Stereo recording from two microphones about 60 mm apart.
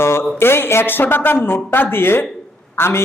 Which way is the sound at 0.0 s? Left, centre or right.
Left.